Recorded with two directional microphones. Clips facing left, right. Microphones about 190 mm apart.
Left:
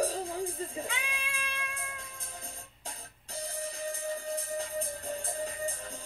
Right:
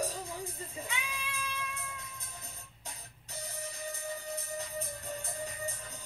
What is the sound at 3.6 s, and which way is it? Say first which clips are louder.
Music: left 5 dB; 30° left (ahead or behind).